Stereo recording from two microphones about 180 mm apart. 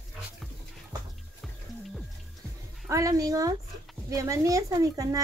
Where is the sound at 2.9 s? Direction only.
20° right (ahead or behind).